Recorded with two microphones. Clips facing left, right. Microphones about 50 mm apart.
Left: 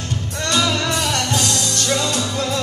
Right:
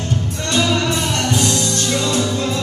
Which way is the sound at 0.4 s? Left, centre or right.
Right.